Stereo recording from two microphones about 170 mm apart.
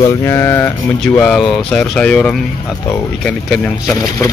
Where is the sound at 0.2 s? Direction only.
15° left (ahead or behind).